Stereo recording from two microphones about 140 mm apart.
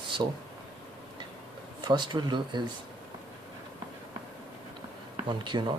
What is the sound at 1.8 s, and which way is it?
Speech, 30° right (ahead or behind).